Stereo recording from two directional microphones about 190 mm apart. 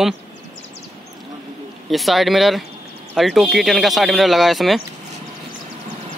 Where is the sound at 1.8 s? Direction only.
Centre (ahead or behind).